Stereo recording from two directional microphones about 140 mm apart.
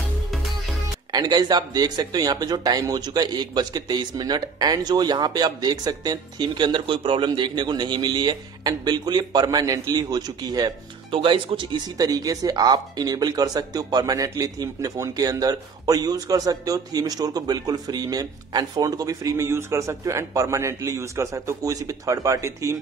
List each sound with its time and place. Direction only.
1.1 s speech: 30° right (ahead or behind)
11.1 s speech: 40° right (ahead or behind); by 22.8 s 20° right (ahead or behind)